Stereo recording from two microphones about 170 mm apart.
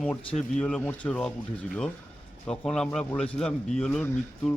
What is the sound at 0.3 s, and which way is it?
Speech, 40° left (ahead or behind).